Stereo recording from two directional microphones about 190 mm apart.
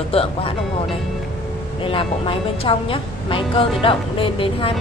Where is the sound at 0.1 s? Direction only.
30° left (ahead or behind).